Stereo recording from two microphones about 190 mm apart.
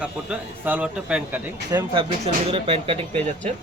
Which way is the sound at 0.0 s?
10° right (ahead or behind).